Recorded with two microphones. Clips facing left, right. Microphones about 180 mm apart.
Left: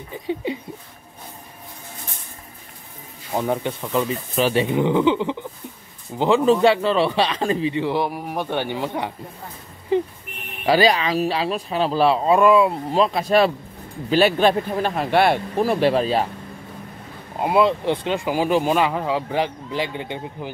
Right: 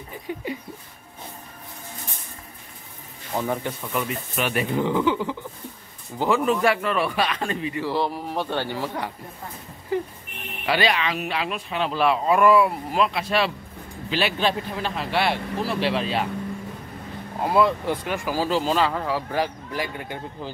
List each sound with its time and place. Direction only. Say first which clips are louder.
3.3 s a man's voice: left 3 dB; 20° left (ahead or behind)
4.6 s a man's voice: left 4 dB; 20° left (ahead or behind)
10.6 s speech: left 6 dB; 35° left (ahead or behind)
17.4 s a man's voice: left 2 dB; 20° left (ahead or behind)